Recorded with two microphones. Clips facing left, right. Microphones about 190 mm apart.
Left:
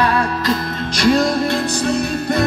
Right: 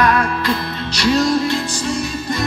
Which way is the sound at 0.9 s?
55° left (ahead or behind).